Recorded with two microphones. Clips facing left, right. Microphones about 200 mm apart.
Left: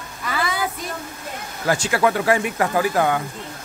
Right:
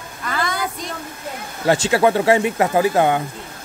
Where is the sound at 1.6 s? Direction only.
25° right (ahead or behind).